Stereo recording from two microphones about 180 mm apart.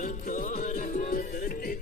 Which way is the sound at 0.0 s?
45° left (ahead or behind).